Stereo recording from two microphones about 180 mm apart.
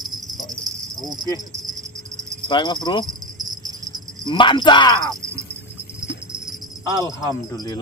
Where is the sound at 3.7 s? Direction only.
20° right (ahead or behind).